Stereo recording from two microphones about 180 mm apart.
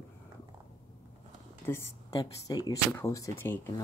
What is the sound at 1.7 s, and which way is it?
Speech, 15° left (ahead or behind).